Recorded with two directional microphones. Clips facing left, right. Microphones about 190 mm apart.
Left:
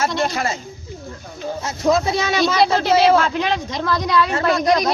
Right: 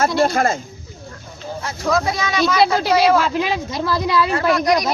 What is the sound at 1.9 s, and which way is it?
Speech, 25° left (ahead or behind).